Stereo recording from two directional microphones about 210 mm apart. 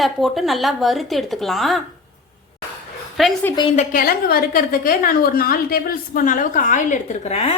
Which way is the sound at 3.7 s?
40° left (ahead or behind).